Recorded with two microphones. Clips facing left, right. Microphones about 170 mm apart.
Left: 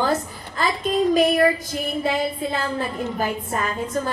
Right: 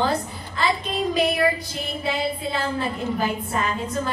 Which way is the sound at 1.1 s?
45° left (ahead or behind).